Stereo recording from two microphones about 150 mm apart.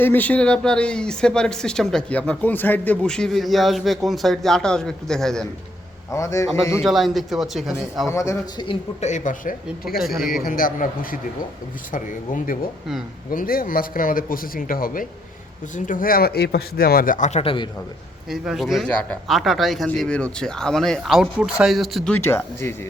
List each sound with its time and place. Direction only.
0.0 s speech: 10° left (ahead or behind)
6.1 s a man's voice: 20° left (ahead or behind)
6.8 s speech: centre (ahead or behind)
8.0 s a man's voice: 20° left (ahead or behind)
8.5 s speech: 35° left (ahead or behind)
9.0 s speech: 55° left (ahead or behind)
13.3 s speech: 70° left (ahead or behind); by 17.4 s 55° left (ahead or behind)
17.4 s speech: 35° left (ahead or behind)
18.3 s speech: centre (ahead or behind)
22.1 s speech: 15° left (ahead or behind)